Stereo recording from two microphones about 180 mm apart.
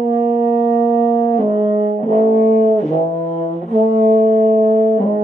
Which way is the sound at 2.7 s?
40° left (ahead or behind).